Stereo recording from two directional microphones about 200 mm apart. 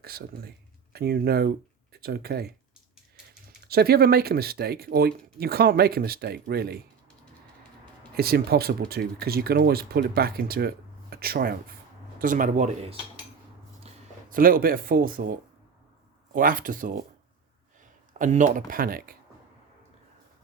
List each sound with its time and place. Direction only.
0.0 s speech: 50° right (ahead or behind)
3.7 s speech: 50° right (ahead or behind)
8.1 s speech: 50° right (ahead or behind)
18.2 s speech: 35° right (ahead or behind)